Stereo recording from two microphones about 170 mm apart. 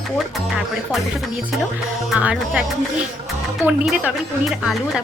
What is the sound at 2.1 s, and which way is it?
Speech, 5° right (ahead or behind).